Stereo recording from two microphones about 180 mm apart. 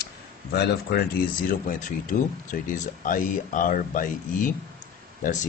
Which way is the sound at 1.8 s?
45° left (ahead or behind).